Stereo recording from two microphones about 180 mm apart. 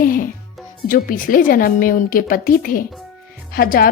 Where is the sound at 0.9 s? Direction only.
50° left (ahead or behind).